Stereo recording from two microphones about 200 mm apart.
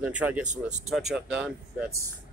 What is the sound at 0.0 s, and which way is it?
Speech, 5° right (ahead or behind).